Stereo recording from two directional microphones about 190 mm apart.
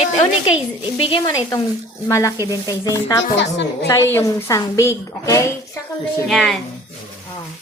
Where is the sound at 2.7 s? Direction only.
20° left (ahead or behind).